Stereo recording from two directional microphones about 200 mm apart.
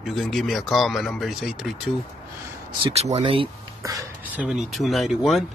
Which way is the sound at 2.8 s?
30° right (ahead or behind).